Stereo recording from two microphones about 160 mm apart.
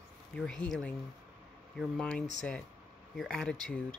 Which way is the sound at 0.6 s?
10° left (ahead or behind).